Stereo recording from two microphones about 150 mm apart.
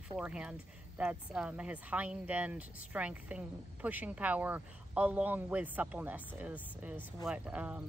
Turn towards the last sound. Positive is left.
turn(degrees=-10)  # may be behind; listen again after turning